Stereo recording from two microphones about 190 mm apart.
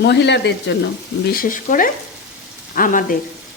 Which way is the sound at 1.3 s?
45° left (ahead or behind).